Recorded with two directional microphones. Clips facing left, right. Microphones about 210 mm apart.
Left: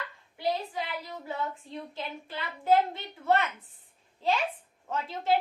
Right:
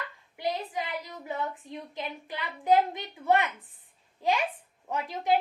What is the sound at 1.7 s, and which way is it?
A child's voice, 20° right (ahead or behind).